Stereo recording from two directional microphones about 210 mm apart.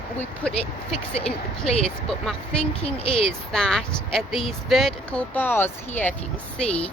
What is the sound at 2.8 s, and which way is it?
Speech, 25° left (ahead or behind).